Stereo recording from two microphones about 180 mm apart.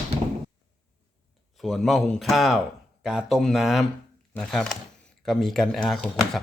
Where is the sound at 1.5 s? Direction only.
Centre (ahead or behind).